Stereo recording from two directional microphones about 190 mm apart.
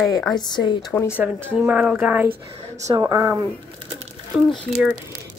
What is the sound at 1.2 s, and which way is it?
A woman's voice, 5° right (ahead or behind).